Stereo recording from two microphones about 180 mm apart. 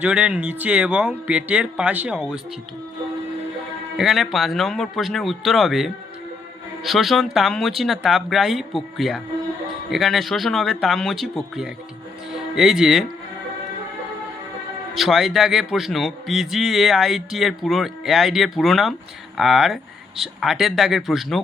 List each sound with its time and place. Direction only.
0.0 s speech: 5° right (ahead or behind)
3.9 s a man's voice: centre (ahead or behind)
14.9 s a man's voice: centre (ahead or behind)